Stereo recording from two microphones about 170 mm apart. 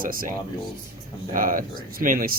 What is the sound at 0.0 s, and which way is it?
Speech, 55° right (ahead or behind).